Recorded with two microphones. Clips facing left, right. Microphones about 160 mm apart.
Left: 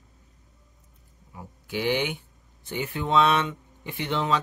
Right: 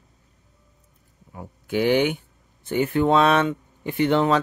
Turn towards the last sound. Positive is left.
turn(degrees=-55)  # may be behind; listen again after turning